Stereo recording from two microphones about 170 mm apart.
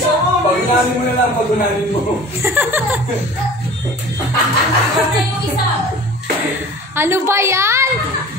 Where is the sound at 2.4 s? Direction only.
10° right (ahead or behind).